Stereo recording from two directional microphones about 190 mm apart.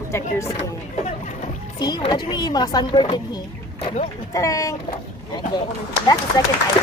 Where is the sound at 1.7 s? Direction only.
20° left (ahead or behind).